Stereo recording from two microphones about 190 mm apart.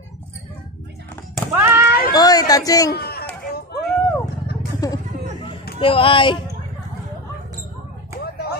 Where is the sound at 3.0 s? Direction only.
55° left (ahead or behind).